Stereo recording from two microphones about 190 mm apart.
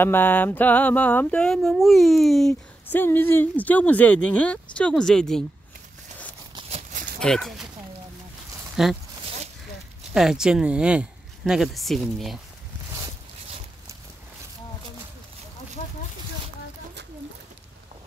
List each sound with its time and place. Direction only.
0.0 s a sound: 10° left (ahead or behind)
4.7 s speech: 5° left (ahead or behind)
6.7 s a sound: 40° right (ahead or behind)
7.2 s speech: 5° left (ahead or behind)
8.8 s speech: 5° right (ahead or behind)
10.1 s speech: 5° right (ahead or behind)